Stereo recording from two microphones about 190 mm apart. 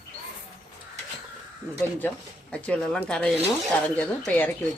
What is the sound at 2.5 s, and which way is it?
Speech, 5° left (ahead or behind).